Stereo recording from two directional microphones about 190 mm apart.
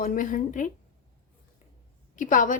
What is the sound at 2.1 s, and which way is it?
Speech, 40° left (ahead or behind).